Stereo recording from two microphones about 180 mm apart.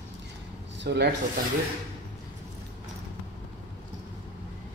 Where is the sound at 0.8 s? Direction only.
65° right (ahead or behind).